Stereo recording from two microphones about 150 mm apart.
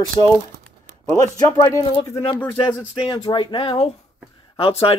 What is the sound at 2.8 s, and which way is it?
Speech, 5° right (ahead or behind).